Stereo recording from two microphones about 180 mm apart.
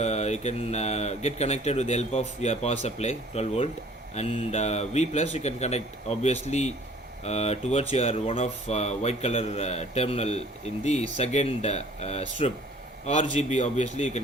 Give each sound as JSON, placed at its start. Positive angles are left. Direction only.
{"t": 0.0, "sound": "speech", "side_deg": 40}